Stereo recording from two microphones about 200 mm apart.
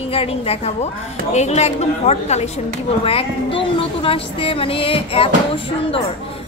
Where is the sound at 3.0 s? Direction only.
25° left (ahead or behind).